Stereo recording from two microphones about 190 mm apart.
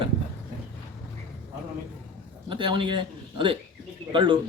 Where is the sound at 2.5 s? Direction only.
25° right (ahead or behind).